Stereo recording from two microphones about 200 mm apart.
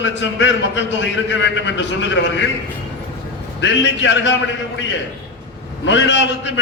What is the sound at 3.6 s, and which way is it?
Speech, 65° left (ahead or behind).